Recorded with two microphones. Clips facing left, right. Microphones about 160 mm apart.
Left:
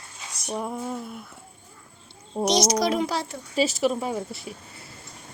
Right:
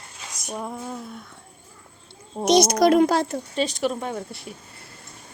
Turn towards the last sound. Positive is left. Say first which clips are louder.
# left 1 dB
turn(degrees=0)  # may be behind; listen again after turning